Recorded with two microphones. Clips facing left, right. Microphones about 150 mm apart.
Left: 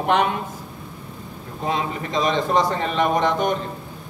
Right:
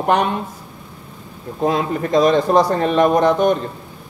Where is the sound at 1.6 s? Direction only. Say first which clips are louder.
Right 6 dB; 45° right (ahead or behind).